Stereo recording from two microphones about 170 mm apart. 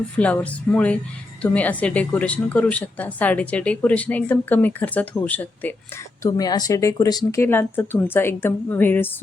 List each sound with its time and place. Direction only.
0.2 s speech: 10° left (ahead or behind)
6.2 s speech: 20° left (ahead or behind)